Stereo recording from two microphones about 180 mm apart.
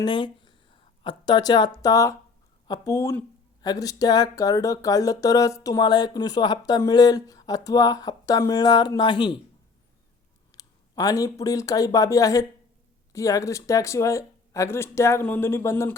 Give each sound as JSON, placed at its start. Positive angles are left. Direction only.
{"t": 0.0, "sound": "speech", "side_deg": 25}
{"t": 10.5, "sound": "speech", "side_deg": 20}